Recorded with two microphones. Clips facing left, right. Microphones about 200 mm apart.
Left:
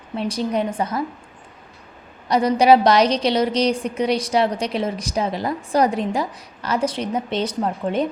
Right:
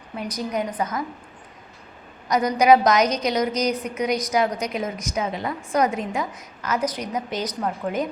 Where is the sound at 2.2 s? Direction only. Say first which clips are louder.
Left 2 dB; 30° left (ahead or behind).